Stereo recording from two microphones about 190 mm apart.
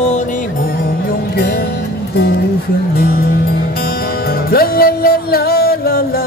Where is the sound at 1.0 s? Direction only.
55° left (ahead or behind).